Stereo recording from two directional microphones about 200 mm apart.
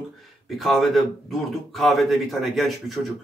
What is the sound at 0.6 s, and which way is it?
A man's voice, centre (ahead or behind).